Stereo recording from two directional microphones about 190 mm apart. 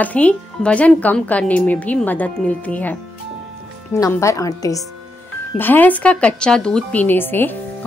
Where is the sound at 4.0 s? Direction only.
15° left (ahead or behind).